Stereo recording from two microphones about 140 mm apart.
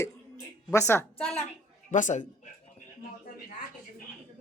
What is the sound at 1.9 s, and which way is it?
Speech, 65° left (ahead or behind).